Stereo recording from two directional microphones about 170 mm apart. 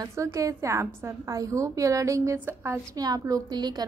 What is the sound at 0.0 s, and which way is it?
A woman's voice, 20° right (ahead or behind).